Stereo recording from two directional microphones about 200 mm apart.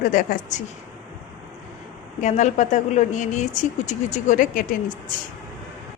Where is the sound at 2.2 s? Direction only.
40° left (ahead or behind).